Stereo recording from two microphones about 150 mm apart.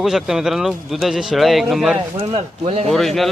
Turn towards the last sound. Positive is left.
turn(degrees=0)  # may be behind; listen again after turning